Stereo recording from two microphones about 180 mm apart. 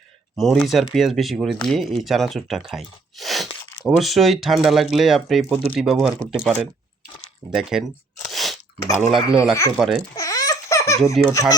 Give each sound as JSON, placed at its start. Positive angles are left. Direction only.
{"t": 0.3, "sound": "speech", "side_deg": 0}
{"t": 7.5, "sound": "a sound", "side_deg": 0}
{"t": 9.0, "sound": "speech", "side_deg": 0}
{"t": 10.2, "sound": "laughter", "side_deg": 20}
{"t": 11.0, "sound": "speech", "side_deg": -5}
{"t": 11.3, "sound": "fowl", "side_deg": 20}